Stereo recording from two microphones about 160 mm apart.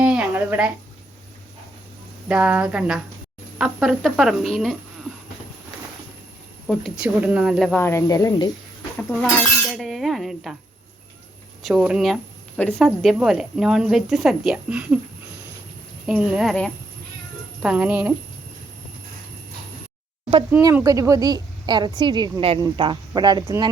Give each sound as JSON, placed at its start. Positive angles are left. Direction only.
{"t": 0.0, "sound": "a sound", "side_deg": -5}
{"t": 2.2, "sound": "speech", "side_deg": -10}
{"t": 6.7, "sound": "speech", "side_deg": 0}
{"t": 7.8, "sound": "speech", "side_deg": 15}
{"t": 9.0, "sound": "speech", "side_deg": 5}
{"t": 11.6, "sound": "speech", "side_deg": -5}
{"t": 16.0, "sound": "speech", "side_deg": -5}
{"t": 17.6, "sound": "speech", "side_deg": -10}
{"t": 20.5, "sound": "a woman's voice", "side_deg": -20}